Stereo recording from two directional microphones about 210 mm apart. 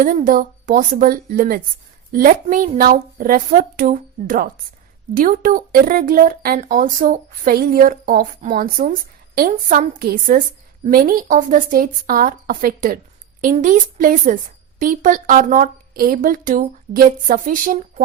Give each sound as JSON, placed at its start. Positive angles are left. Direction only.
{"t": 0.0, "sound": "speech", "side_deg": -40}